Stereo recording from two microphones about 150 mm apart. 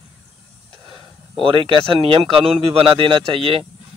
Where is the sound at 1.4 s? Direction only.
35° right (ahead or behind).